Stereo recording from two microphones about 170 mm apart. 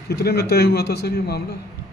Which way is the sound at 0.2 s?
70° left (ahead or behind).